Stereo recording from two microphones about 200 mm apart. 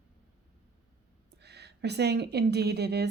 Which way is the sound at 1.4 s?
55° right (ahead or behind).